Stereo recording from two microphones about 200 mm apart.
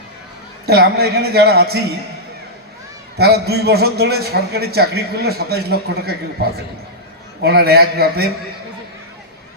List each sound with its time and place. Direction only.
0.6 s a man's voice: 50° right (ahead or behind)
3.2 s a man's voice: 55° right (ahead or behind)
7.4 s a man's voice: 50° right (ahead or behind)